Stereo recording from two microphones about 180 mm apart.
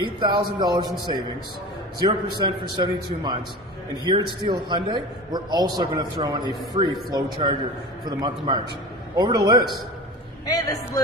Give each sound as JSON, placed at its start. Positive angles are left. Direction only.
{"t": 0.0, "sound": "a man's voice", "side_deg": -25}
{"t": 10.4, "sound": "a man's voice", "side_deg": 20}